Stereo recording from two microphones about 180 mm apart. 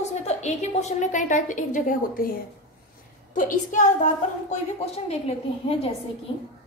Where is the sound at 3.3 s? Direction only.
45° left (ahead or behind).